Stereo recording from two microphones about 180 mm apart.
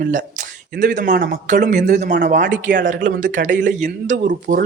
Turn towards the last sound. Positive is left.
turn(degrees=-45)  # may be behind; listen again after turning